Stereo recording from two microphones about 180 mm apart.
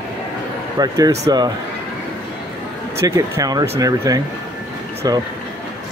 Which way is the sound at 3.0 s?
20° right (ahead or behind).